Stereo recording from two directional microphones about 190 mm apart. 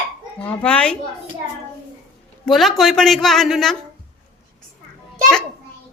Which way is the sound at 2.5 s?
Centre (ahead or behind).